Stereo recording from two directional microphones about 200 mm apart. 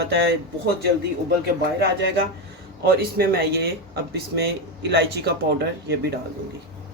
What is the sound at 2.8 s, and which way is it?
Speech, 50° right (ahead or behind).